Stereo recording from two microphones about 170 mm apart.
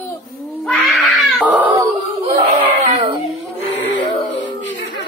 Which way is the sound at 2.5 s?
30° right (ahead or behind).